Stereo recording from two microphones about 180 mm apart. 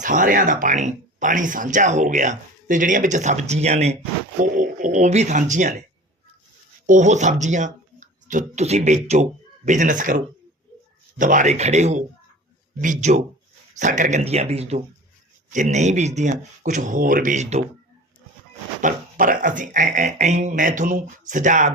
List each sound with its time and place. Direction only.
0.0 s speech: 45° right (ahead or behind)
6.8 s speech: 45° right (ahead or behind)
18.8 s speech: 45° right (ahead or behind)